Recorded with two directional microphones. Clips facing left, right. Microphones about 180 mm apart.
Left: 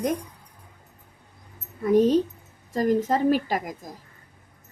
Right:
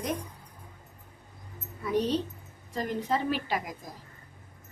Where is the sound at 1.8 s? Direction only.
45° left (ahead or behind).